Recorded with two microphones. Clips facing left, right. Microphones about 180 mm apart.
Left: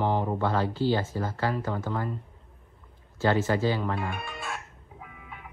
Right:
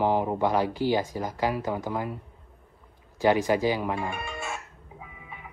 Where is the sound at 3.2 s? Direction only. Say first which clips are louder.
Right 2 dB; 15° right (ahead or behind).